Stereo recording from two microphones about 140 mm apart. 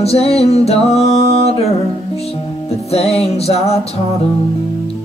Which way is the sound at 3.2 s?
45° left (ahead or behind).